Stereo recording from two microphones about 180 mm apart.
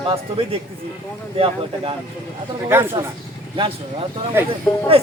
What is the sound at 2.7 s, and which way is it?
Speech, 15° right (ahead or behind).